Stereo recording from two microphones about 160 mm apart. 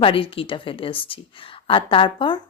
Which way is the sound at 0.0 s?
35° left (ahead or behind).